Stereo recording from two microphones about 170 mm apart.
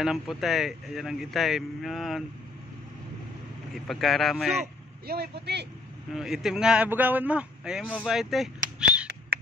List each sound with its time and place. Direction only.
0.0 s speech: centre (ahead or behind)
3.7 s speech: centre (ahead or behind)
5.0 s speech: 65° right (ahead or behind)
6.1 s speech: 5° right (ahead or behind)